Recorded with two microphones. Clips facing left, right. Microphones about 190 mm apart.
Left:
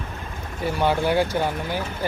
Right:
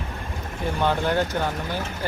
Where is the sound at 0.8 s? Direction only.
10° left (ahead or behind).